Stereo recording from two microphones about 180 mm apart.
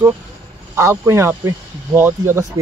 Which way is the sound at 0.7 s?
15° right (ahead or behind).